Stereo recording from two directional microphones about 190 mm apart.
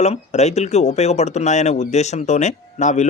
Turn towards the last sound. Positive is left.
turn(degrees=40)  # may be behind; listen again after turning